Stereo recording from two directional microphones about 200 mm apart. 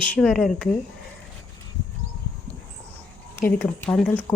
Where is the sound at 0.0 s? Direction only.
5° left (ahead or behind).